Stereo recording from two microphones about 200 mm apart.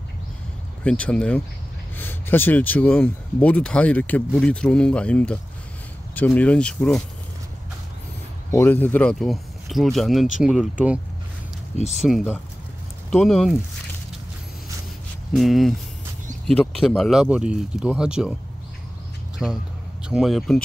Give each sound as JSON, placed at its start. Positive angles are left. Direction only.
{"t": 0.8, "sound": "speech", "side_deg": 5}
{"t": 8.5, "sound": "speech", "side_deg": 10}
{"t": 11.7, "sound": "speech", "side_deg": 35}
{"t": 12.0, "sound": "speech", "side_deg": 0}
{"t": 15.3, "sound": "speech", "side_deg": 0}
{"t": 19.3, "sound": "speech", "side_deg": 0}